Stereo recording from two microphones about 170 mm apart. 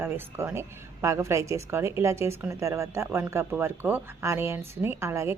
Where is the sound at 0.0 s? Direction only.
15° right (ahead or behind).